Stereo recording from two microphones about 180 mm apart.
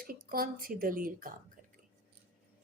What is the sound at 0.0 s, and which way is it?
A woman's voice, 55° right (ahead or behind).